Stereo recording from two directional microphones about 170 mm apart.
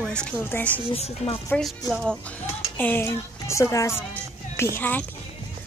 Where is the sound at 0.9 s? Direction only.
40° left (ahead or behind).